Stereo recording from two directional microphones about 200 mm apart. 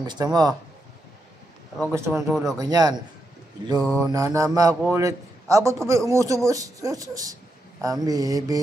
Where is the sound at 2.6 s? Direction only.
20° right (ahead or behind).